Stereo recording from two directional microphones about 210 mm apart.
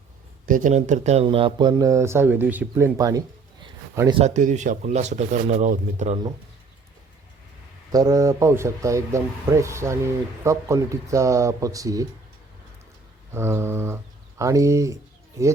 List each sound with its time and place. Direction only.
0.4 s speech: 40° right (ahead or behind); by 3.2 s 15° right (ahead or behind)
4.2 s speech: 35° right (ahead or behind)
7.9 s speech: 15° right (ahead or behind)
13.3 s speech: 10° right (ahead or behind)